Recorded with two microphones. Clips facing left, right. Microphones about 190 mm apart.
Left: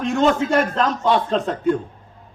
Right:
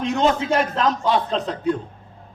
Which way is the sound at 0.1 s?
45° left (ahead or behind).